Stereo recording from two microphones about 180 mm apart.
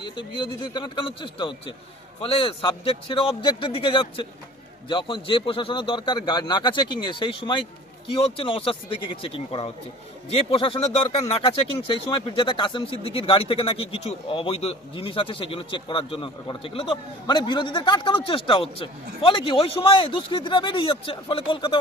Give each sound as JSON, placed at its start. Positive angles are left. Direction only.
{"t": 0.0, "sound": "speech", "side_deg": 25}